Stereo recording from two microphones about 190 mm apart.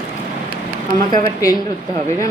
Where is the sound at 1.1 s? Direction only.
20° left (ahead or behind).